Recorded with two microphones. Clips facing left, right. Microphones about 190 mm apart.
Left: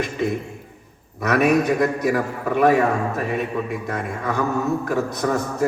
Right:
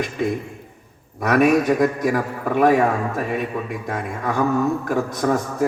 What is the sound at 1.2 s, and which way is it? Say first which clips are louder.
A man's voice: right 2 dB; 45° right (ahead or behind).